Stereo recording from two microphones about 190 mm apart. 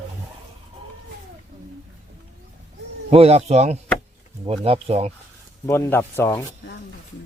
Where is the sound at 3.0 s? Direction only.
30° right (ahead or behind).